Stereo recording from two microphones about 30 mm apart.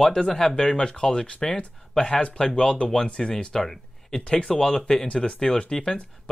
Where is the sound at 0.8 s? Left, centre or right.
Left.